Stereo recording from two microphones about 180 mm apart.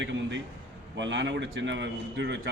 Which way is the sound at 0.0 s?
90° right.